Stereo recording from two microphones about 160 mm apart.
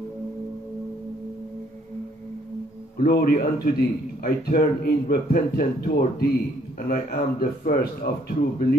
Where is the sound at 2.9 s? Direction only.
75° left (ahead or behind).